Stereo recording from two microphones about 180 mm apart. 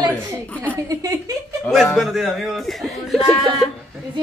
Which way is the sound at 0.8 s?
20° right (ahead or behind).